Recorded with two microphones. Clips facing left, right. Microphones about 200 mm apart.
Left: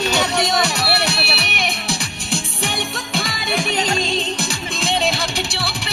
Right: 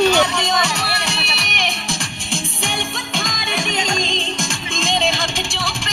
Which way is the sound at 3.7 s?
35° left (ahead or behind).